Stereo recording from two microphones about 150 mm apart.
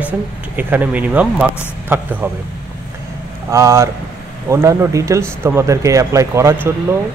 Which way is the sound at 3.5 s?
20° right (ahead or behind).